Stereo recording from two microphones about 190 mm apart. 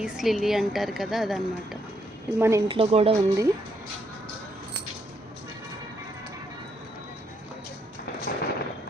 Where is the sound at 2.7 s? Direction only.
30° right (ahead or behind).